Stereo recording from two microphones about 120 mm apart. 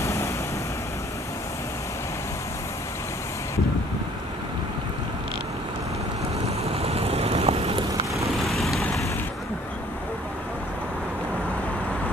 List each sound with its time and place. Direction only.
0.0 s vehicle: 25° left (ahead or behind)
6.6 s vehicle: 60° right (ahead or behind)
7.9 s vehicle: 25° right (ahead or behind)
8.5 s vehicle: centre (ahead or behind)